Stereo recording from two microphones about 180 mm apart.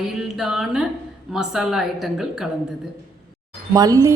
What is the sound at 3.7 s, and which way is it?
Speech, 20° right (ahead or behind).